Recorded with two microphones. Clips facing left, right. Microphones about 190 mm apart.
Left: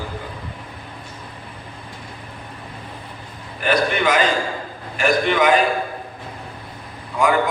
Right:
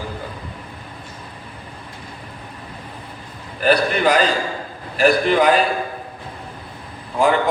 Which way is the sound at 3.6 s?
35° right (ahead or behind).